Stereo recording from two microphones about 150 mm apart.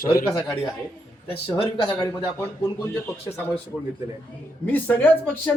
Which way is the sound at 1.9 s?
25° left (ahead or behind).